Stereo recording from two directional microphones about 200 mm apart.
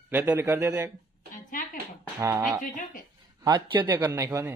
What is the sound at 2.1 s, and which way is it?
A man's voice, 15° right (ahead or behind).